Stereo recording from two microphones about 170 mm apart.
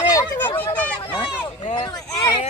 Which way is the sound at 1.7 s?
20° left (ahead or behind).